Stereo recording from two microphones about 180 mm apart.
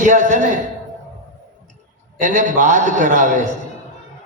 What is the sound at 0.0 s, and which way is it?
Speech, 45° right (ahead or behind).